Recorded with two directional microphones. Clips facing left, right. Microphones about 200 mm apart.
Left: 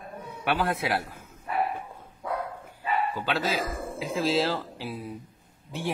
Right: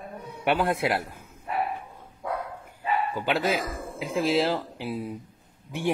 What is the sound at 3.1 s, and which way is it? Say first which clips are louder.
Speech: right 3 dB; 15° right (ahead or behind).